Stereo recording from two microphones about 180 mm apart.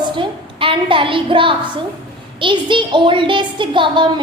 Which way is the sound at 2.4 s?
25° right (ahead or behind).